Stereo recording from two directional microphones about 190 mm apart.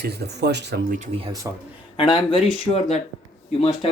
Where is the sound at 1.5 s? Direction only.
20° right (ahead or behind).